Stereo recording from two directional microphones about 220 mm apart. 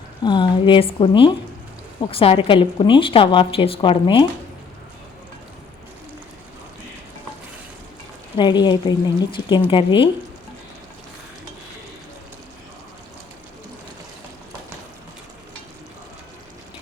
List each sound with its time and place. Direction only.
0.2 s a woman's voice: 20° left (ahead or behind)
8.4 s a woman's voice: 20° left (ahead or behind)